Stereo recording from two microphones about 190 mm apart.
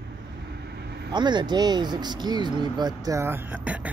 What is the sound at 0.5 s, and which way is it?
Vehicle, 60° right (ahead or behind).